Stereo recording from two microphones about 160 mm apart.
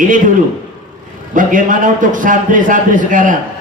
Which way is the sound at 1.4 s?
55° right (ahead or behind).